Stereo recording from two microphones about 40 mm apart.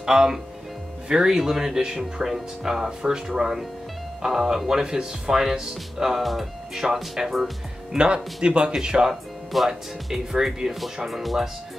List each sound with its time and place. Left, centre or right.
0.0 s speech: centre
7.9 s speech: right
9.1 s music: centre
10.0 s speech: centre